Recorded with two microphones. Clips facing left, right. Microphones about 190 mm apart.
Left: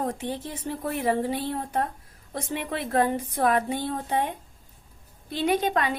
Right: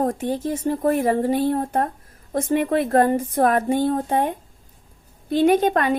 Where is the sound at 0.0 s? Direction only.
45° right (ahead or behind).